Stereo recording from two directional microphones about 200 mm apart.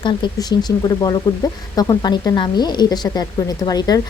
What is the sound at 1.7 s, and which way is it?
A woman's voice, 20° left (ahead or behind).